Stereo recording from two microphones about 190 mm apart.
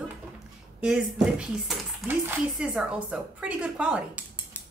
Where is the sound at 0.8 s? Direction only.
5° right (ahead or behind).